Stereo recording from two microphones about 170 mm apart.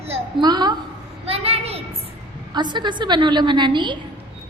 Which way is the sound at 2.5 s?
25° right (ahead or behind).